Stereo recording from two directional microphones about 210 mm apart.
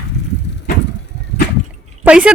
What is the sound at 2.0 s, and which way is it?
Speech, 5° right (ahead or behind).